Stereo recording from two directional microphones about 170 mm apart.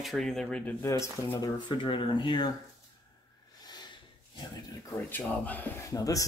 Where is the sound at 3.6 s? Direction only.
25° left (ahead or behind).